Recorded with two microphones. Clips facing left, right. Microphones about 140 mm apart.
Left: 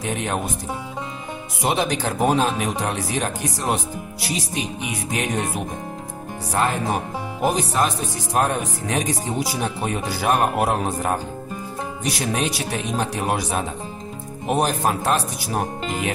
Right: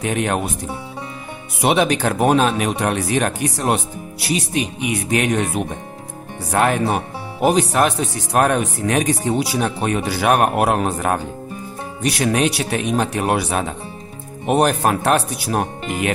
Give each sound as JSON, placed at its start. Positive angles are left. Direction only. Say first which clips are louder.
{"t": 0.0, "sound": "speech", "louder": "right 5 dB", "side_deg": -65}
{"t": 1.6, "sound": "speech", "louder": "right 5 dB", "side_deg": -70}
{"t": 6.5, "sound": "speech", "louder": "right 4 dB", "side_deg": -65}